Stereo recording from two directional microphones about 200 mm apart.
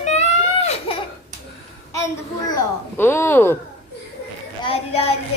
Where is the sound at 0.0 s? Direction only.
35° left (ahead or behind).